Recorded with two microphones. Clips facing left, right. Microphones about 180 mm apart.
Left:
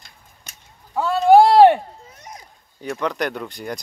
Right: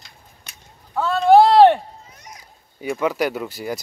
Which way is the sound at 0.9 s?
15° left (ahead or behind).